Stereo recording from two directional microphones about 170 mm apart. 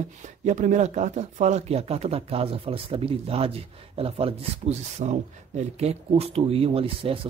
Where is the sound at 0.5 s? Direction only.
45° right (ahead or behind).